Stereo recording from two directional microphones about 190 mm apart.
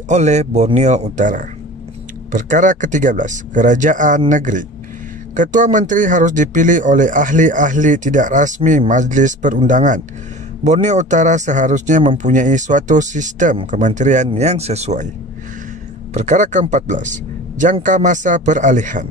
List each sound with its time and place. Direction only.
0.1 s speech: 35° right (ahead or behind)
16.1 s speech: 40° right (ahead or behind)